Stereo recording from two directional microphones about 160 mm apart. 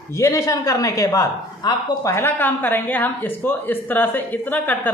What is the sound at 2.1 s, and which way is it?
Speech, 15° left (ahead or behind).